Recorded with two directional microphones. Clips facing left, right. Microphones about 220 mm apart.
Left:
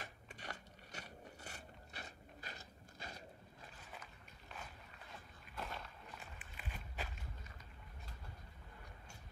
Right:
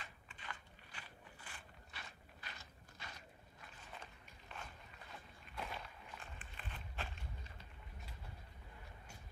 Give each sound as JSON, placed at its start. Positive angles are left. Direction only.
{"t": 0.0, "sound": "biting", "side_deg": 45}
{"t": 5.6, "sound": "walk", "side_deg": 0}
{"t": 6.5, "sound": "a sound", "side_deg": 10}